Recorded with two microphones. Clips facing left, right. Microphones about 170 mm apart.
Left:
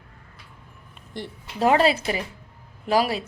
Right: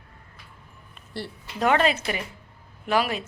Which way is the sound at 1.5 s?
30° left (ahead or behind).